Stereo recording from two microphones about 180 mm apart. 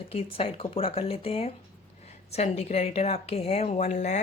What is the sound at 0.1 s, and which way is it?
A woman's voice, 30° left (ahead or behind).